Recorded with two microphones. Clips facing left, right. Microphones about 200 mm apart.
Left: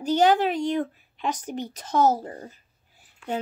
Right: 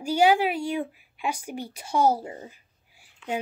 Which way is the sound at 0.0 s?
10° right (ahead or behind).